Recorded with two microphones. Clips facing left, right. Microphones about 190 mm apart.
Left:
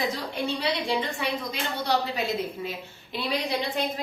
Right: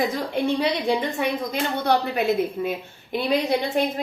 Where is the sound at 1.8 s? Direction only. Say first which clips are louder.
Right 4 dB; 55° right (ahead or behind).